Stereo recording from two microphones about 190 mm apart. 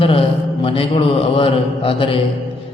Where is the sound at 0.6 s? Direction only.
30° left (ahead or behind).